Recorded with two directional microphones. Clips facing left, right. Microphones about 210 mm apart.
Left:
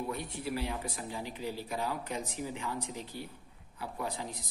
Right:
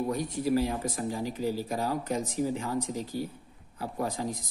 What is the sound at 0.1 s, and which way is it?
Speech, 40° right (ahead or behind).